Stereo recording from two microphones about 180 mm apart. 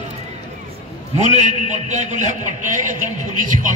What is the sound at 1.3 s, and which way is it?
Speech, 40° right (ahead or behind).